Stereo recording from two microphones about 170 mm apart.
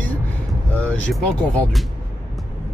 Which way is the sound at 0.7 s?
10° left (ahead or behind).